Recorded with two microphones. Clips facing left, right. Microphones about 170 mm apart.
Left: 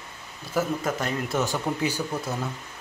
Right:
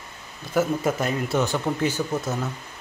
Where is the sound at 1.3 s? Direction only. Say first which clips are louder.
Right 3 dB; 5° left (ahead or behind).